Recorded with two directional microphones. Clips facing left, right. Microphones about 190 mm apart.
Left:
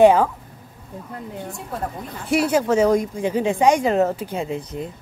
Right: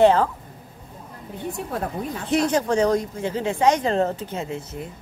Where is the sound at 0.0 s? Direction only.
10° left (ahead or behind).